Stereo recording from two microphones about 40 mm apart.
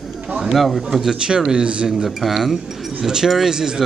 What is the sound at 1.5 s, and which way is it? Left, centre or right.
Speech, right.